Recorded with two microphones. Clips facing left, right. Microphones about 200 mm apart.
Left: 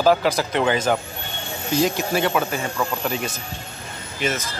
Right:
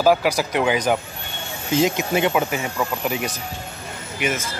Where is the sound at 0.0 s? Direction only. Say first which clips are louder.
Even; 10° right (ahead or behind).